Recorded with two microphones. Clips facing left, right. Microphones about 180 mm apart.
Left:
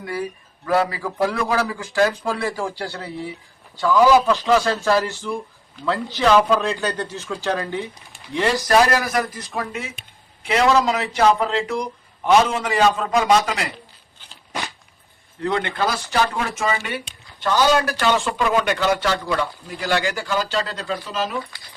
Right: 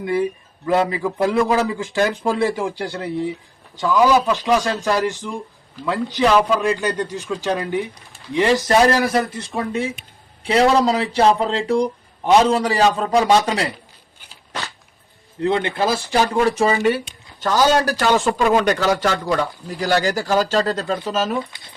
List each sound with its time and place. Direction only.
0.0 s a man's voice: 20° right (ahead or behind)
15.4 s a man's voice: 25° right (ahead or behind); by 21.3 s 45° right (ahead or behind)